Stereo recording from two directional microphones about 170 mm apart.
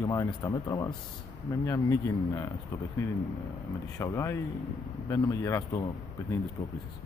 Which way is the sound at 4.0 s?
15° left (ahead or behind).